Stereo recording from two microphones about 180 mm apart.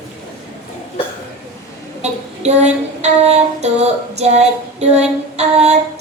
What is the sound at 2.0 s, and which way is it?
Female singing, 35° right (ahead or behind).